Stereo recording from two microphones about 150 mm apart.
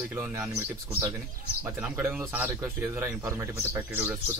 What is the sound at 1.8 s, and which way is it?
Speech, 10° right (ahead or behind).